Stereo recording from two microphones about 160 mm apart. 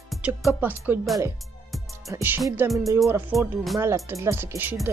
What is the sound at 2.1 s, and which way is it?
Speech, 15° right (ahead or behind).